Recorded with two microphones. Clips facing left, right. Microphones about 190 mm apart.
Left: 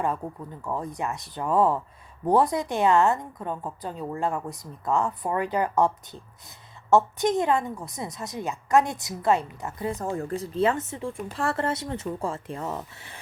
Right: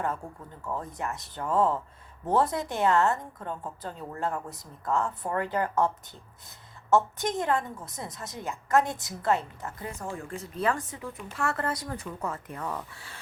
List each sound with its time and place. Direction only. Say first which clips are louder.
0.2 s a woman's voice: left 5 dB; 20° left (ahead or behind)
9.9 s speech: left 7 dB; 35° left (ahead or behind); by 13.1 s 20° left (ahead or behind)